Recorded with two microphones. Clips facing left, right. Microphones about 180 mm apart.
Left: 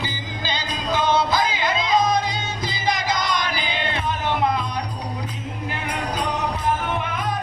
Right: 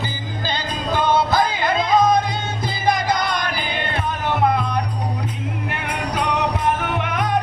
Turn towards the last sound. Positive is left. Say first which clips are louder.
# right 4 dB
turn(degrees=-85)